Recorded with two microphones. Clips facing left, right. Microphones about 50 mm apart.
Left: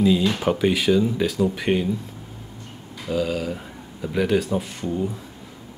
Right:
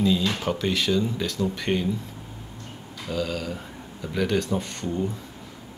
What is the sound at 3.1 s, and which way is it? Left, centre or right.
Speech, centre.